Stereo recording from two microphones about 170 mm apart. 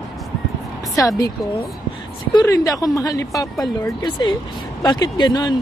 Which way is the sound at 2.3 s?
20° left (ahead or behind).